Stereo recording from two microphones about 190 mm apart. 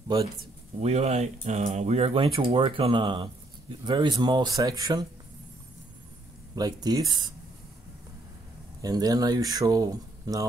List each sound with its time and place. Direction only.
0.7 s speech: 35° right (ahead or behind)
6.5 s speech: 20° right (ahead or behind)
8.8 s speech: 20° right (ahead or behind)